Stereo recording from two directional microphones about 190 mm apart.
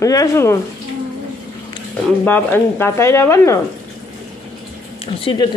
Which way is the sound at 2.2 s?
10° left (ahead or behind).